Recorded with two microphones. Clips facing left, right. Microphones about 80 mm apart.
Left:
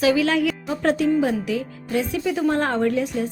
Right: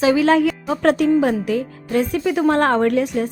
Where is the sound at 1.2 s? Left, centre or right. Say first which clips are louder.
Right 4 dB; right.